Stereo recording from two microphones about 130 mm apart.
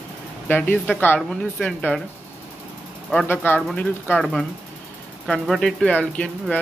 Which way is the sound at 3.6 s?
5° left (ahead or behind).